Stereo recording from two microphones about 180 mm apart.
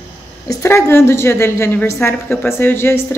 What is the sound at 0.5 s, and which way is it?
A woman's voice, 15° left (ahead or behind).